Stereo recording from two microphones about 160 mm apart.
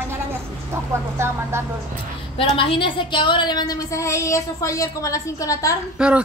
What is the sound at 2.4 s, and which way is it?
A woman's voice, 35° left (ahead or behind).